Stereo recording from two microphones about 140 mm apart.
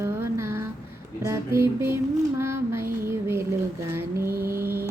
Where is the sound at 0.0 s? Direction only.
20° right (ahead or behind).